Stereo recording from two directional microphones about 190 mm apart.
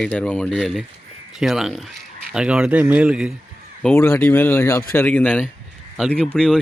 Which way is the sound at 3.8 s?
10° left (ahead or behind).